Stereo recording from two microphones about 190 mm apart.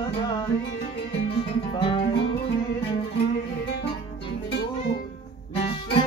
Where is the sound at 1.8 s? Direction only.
30° left (ahead or behind).